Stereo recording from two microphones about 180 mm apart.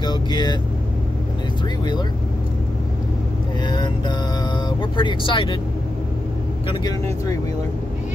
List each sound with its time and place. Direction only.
0.0 s vehicle: 25° left (ahead or behind)
3.6 s vehicle: 25° left (ahead or behind)
4.6 s speech: 25° left (ahead or behind)
6.7 s speech: 25° left (ahead or behind)